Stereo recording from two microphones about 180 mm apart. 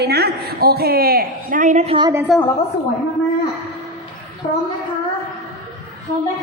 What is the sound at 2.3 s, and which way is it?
Speech, centre (ahead or behind).